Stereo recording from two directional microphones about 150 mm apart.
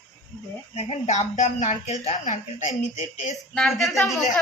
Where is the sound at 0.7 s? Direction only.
45° left (ahead or behind).